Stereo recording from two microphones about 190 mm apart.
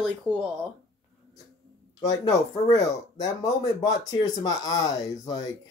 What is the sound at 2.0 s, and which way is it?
Speech, 15° left (ahead or behind).